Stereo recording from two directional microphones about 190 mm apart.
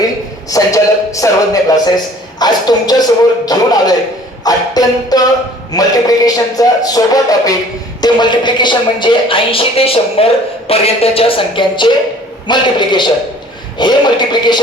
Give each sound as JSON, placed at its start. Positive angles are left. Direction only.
{"t": 0.5, "sound": "speech", "side_deg": 15}
{"t": 2.4, "sound": "music", "side_deg": 20}
{"t": 10.7, "sound": "speech", "side_deg": 30}
{"t": 12.5, "sound": "music", "side_deg": 25}